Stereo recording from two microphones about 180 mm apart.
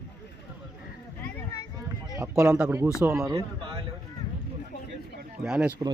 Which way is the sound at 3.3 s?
30° right (ahead or behind).